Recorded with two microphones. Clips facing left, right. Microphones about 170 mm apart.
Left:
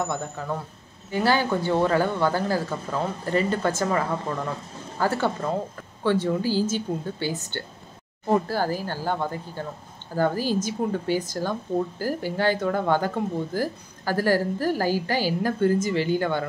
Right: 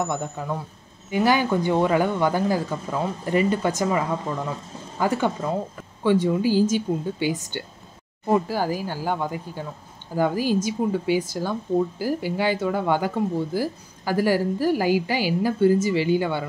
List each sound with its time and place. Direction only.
0.4 s speech: 15° right (ahead or behind)